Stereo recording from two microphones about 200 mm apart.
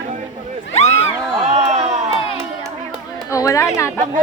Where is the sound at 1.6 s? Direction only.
35° right (ahead or behind).